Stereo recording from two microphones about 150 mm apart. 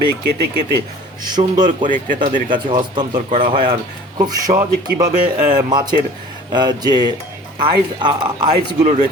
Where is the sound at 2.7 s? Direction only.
30° right (ahead or behind).